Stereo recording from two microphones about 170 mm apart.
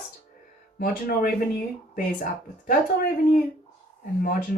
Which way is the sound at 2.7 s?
60° left (ahead or behind).